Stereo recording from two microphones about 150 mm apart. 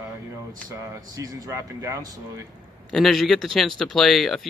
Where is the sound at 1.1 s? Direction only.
25° right (ahead or behind).